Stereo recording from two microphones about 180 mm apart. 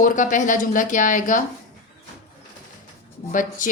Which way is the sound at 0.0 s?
45° left (ahead or behind).